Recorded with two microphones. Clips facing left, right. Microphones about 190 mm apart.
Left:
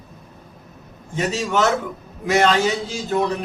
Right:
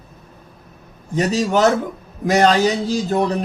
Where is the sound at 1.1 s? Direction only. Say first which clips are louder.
Right 4 dB; 35° right (ahead or behind).